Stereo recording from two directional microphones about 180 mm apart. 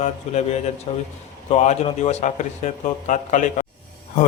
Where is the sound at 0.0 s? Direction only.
40° left (ahead or behind).